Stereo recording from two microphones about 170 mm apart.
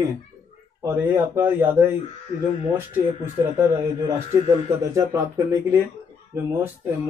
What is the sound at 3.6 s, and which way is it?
Speech, 15° right (ahead or behind).